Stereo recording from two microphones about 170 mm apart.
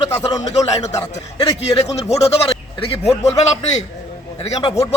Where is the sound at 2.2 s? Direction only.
35° left (ahead or behind).